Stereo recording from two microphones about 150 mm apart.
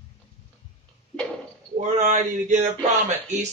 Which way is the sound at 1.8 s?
50° right (ahead or behind).